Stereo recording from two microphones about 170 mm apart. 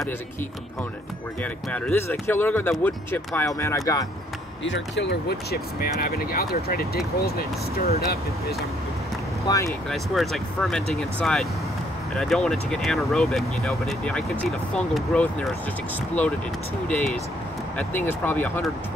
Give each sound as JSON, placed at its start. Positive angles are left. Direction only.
{"t": 1.4, "sound": "speech", "side_deg": 10}
{"t": 4.6, "sound": "speech", "side_deg": 90}
{"t": 9.5, "sound": "speech", "side_deg": 20}
{"t": 9.8, "sound": "speech", "side_deg": 0}
{"t": 16.8, "sound": "speech", "side_deg": 5}